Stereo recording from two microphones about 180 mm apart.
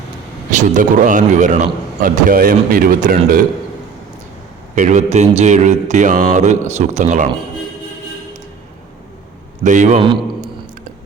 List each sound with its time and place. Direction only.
0.5 s a man's voice: 45° right (ahead or behind)
4.7 s speech: 45° right (ahead or behind)
9.6 s a man's voice: 45° right (ahead or behind)